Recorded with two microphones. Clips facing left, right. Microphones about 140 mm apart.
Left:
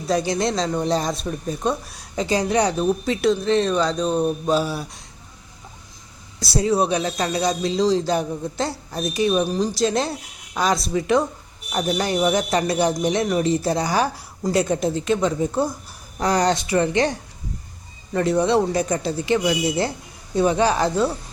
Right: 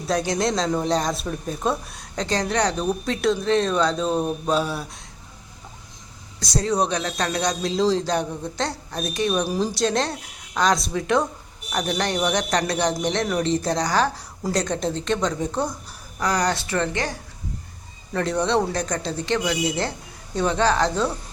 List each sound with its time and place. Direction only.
0.1 s speech: centre (ahead or behind)
6.4 s speech: 5° left (ahead or behind)
16.2 s speech: 25° left (ahead or behind)
18.1 s speech: 5° left (ahead or behind)